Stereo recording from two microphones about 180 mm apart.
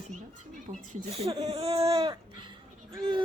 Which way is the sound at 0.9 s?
35° right (ahead or behind).